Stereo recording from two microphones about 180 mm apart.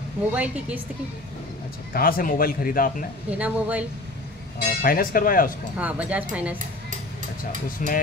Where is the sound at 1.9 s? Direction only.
55° left (ahead or behind).